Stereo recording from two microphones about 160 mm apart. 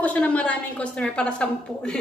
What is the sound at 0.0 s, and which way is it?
A woman's voice, 10° left (ahead or behind).